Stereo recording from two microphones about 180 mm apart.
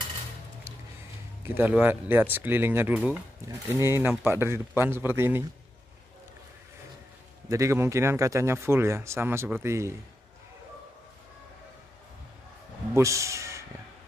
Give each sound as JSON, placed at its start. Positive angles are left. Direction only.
{"t": 1.4, "sound": "speech", "side_deg": -10}
{"t": 7.4, "sound": "speech", "side_deg": -15}
{"t": 12.9, "sound": "speech", "side_deg": -15}